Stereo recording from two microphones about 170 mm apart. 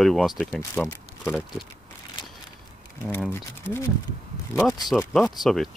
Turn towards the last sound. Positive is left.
turn(degrees=0)  # may be behind; listen again after turning